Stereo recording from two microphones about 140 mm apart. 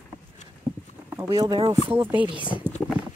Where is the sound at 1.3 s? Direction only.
30° right (ahead or behind).